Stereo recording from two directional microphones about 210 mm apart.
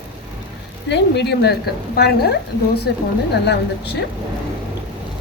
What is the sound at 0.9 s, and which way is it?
A woman's voice, 50° left (ahead or behind).